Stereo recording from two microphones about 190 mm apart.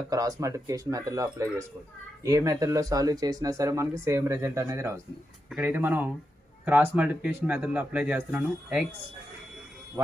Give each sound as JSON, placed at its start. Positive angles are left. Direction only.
{"t": 0.1, "sound": "speech", "side_deg": -20}